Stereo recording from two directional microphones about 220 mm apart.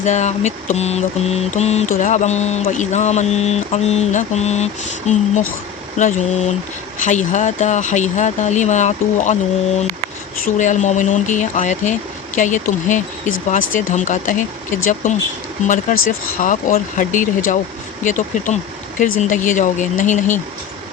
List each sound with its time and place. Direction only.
0.0 s mantra: 30° left (ahead or behind)